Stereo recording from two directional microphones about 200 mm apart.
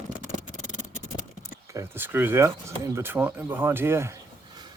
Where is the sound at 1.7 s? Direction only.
10° right (ahead or behind).